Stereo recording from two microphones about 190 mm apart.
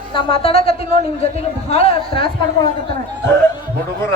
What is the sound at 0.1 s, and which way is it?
A man's voice, 30° left (ahead or behind).